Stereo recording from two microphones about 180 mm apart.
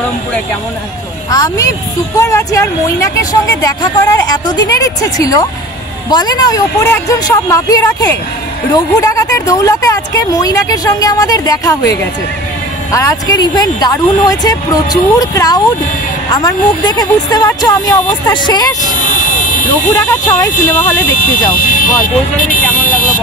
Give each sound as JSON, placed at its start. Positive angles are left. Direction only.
{"t": 1.3, "sound": "speech", "side_deg": 20}
{"t": 12.9, "sound": "speech", "side_deg": 20}
{"t": 18.9, "sound": "vehicle", "side_deg": 45}
{"t": 20.1, "sound": "speech", "side_deg": 15}
{"t": 21.2, "sound": "speech", "side_deg": 50}